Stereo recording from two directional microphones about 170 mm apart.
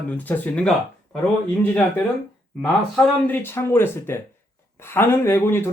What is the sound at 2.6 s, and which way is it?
Speech, 10° left (ahead or behind).